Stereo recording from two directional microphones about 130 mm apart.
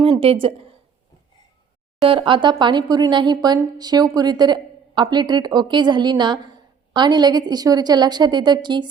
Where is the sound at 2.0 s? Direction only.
45° right (ahead or behind).